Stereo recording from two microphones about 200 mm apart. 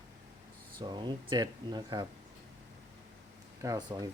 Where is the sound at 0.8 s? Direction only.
20° right (ahead or behind).